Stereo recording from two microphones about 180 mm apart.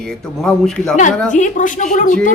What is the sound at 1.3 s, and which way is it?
Speech, 45° left (ahead or behind).